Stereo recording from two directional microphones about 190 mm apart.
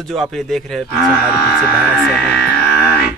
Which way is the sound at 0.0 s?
Centre (ahead or behind).